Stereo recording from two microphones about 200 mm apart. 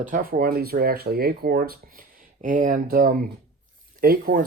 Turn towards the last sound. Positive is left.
turn(degrees=-45)  # may be behind; listen again after turning